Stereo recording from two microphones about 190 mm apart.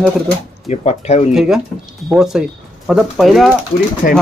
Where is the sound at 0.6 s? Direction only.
35° left (ahead or behind).